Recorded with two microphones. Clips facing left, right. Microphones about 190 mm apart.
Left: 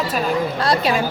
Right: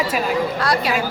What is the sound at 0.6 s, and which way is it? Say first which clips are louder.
Speech: left 2 dB; 25° left (ahead or behind).